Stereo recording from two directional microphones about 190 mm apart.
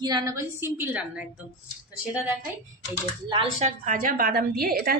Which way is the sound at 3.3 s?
30° right (ahead or behind).